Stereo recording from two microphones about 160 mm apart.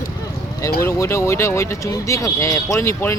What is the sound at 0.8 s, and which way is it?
Speech, 20° left (ahead or behind).